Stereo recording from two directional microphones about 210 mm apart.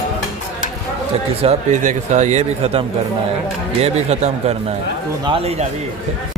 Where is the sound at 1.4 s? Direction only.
35° right (ahead or behind).